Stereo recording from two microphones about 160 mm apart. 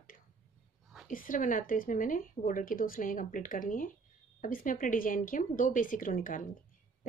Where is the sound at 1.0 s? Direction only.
60° left (ahead or behind).